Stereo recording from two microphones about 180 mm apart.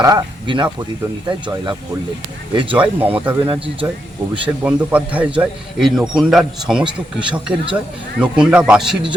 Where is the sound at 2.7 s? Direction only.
10° right (ahead or behind).